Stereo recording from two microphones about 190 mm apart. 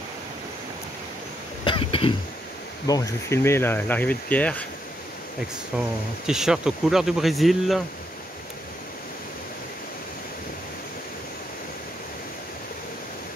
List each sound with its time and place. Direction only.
1.6 s cough: 25° left (ahead or behind)
2.9 s speech: 15° left (ahead or behind)
5.7 s speech: 5° right (ahead or behind)